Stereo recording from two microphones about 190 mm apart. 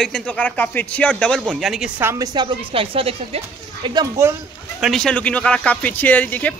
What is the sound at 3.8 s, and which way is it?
Speech, 20° right (ahead or behind).